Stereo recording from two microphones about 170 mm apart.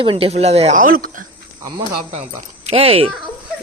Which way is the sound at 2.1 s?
40° right (ahead or behind).